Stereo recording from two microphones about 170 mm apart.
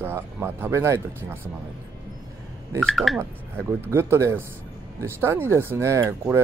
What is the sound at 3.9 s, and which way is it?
Speech, 15° right (ahead or behind).